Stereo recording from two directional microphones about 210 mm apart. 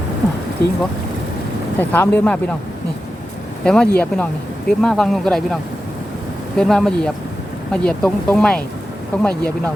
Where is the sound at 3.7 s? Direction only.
5° left (ahead or behind).